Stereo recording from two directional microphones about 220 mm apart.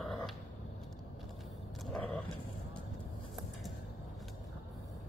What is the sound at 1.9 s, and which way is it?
Roaring cats, centre (ahead or behind).